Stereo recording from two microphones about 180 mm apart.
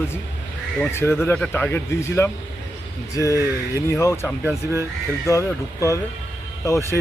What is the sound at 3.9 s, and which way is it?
Speech, 15° left (ahead or behind).